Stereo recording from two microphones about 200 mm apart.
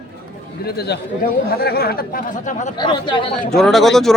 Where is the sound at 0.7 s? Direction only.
55° left (ahead or behind).